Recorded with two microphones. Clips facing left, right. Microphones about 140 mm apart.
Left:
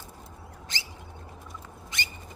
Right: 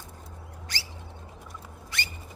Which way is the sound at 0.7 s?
20° left (ahead or behind).